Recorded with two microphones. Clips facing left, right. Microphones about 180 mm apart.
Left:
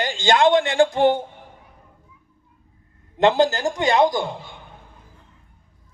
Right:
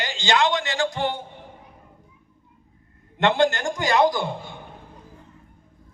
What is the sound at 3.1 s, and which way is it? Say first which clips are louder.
Speech: left 3 dB; 35° left (ahead or behind).